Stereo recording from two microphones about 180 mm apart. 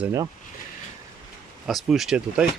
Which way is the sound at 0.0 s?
15° right (ahead or behind).